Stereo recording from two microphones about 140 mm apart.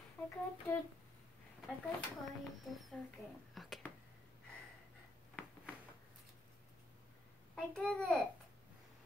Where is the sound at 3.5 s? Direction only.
Centre (ahead or behind).